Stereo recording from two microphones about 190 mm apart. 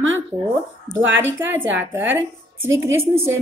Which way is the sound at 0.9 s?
20° left (ahead or behind).